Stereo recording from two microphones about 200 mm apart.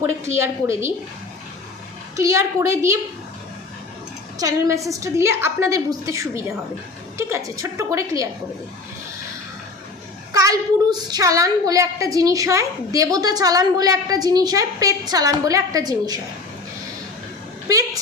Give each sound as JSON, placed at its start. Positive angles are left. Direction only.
{"t": 0.0, "sound": "a woman's voice", "side_deg": -10}
{"t": 2.1, "sound": "a woman's voice", "side_deg": -15}
{"t": 4.4, "sound": "a woman's voice", "side_deg": -15}
{"t": 10.3, "sound": "a woman's voice", "side_deg": -15}
{"t": 17.7, "sound": "a sound", "side_deg": -15}